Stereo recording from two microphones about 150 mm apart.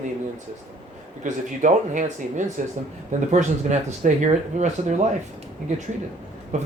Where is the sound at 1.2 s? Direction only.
60° right (ahead or behind).